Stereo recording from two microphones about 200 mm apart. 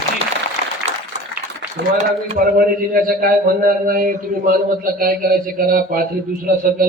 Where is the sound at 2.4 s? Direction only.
45° right (ahead or behind).